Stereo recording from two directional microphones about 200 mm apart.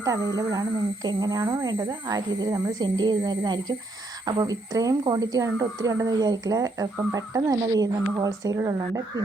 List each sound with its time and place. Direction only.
0.0 s a woman's voice: 20° right (ahead or behind)